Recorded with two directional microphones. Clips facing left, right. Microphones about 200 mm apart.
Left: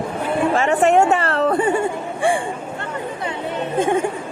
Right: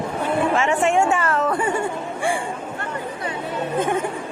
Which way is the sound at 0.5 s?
35° left (ahead or behind).